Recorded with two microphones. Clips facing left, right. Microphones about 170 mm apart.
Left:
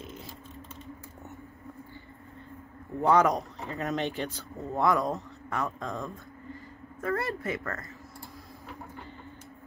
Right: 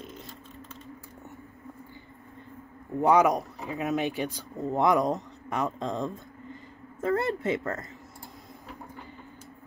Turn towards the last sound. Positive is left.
turn(degrees=-25)  # may be behind; listen again after turning